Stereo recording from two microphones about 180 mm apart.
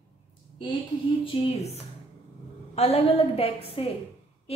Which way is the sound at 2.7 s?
35° left (ahead or behind).